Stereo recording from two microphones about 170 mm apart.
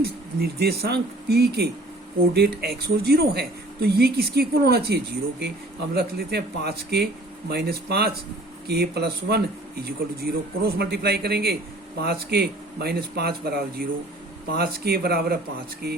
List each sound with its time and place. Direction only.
0.0 s speech: 65° right (ahead or behind)